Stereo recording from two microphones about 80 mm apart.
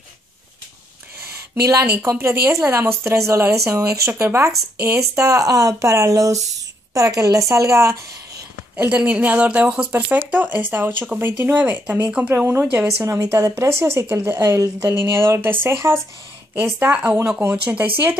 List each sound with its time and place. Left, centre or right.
1.6 s speech: right
8.7 s speech: centre
16.9 s speech: centre
17.4 s speech: right